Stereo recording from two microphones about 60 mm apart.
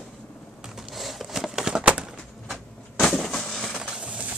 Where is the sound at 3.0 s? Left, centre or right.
Centre.